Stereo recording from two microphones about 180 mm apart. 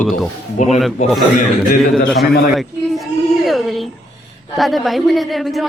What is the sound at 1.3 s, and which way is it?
Speech, 50° left (ahead or behind).